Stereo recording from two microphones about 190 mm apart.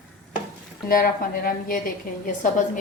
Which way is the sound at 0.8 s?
50° left (ahead or behind).